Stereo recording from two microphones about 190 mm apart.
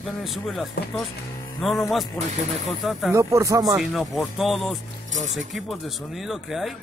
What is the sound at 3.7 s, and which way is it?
Speech, centre (ahead or behind).